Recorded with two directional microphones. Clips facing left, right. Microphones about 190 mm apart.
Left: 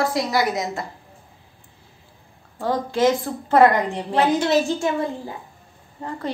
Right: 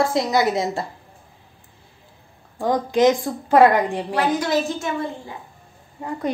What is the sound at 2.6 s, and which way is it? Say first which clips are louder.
A woman's voice: right 3 dB; 15° right (ahead or behind).